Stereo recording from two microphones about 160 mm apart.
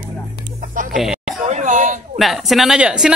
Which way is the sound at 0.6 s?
55° right (ahead or behind).